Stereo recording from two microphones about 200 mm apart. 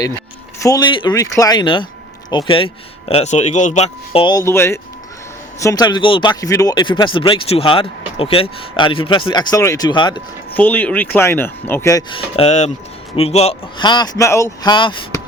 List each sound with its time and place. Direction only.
0.6 s speech: 20° left (ahead or behind)
10.5 s speech: 10° left (ahead or behind)
12.4 s speech: 35° left (ahead or behind)